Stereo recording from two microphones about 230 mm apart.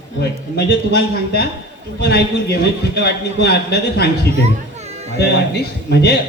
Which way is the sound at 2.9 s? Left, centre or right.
Left.